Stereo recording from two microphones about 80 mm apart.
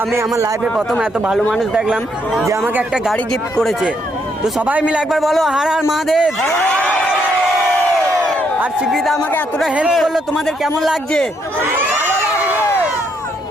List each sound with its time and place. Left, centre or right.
1.3 s speech: centre
3.6 s speech: centre
4.6 s a man's voice: centre
5.1 s speech: centre
6.5 s speech: centre
8.9 s speech: centre
11.6 s crowd: right